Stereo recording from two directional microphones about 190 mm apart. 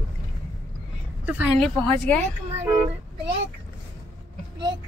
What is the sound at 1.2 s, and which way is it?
Speech, 5° right (ahead or behind).